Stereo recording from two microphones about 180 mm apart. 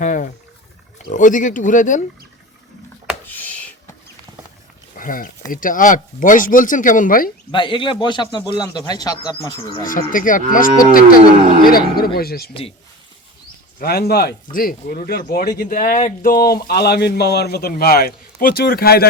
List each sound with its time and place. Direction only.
0.0 s speech: 45° left (ahead or behind)
3.2 s a sound: 10° left (ahead or behind)
4.9 s speech: 50° left (ahead or behind)
7.5 s speech: 25° left (ahead or behind)
9.8 s speech: 50° left (ahead or behind)
13.7 s speech: 60° left (ahead or behind)